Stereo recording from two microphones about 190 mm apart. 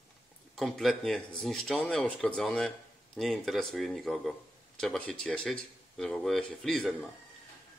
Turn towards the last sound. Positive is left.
turn(degrees=0)  # may be behind; listen again after turning